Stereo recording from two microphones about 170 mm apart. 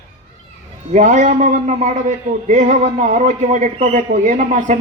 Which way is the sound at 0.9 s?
50° right (ahead or behind).